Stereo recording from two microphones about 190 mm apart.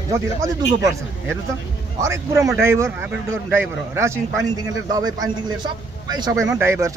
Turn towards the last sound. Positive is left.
turn(degrees=-15)  # may be behind; listen again after turning